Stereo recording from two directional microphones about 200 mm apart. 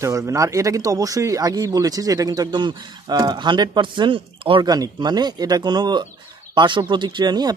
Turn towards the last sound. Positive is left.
turn(degrees=-20)  # may be behind; listen again after turning